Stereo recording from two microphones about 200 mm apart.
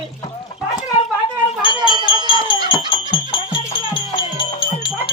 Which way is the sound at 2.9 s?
25° left (ahead or behind).